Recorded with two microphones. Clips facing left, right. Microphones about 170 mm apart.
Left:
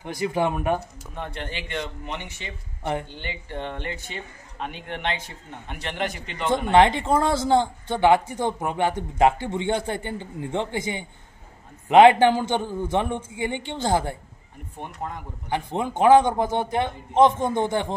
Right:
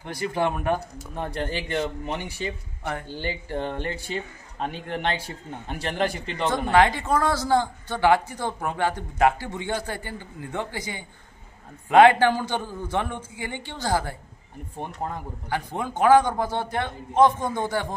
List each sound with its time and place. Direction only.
0.0 s speech: 15° left (ahead or behind)
1.1 s a man's voice: 40° right (ahead or behind)
6.5 s speech: 25° left (ahead or behind)
15.5 s speech: 20° left (ahead or behind)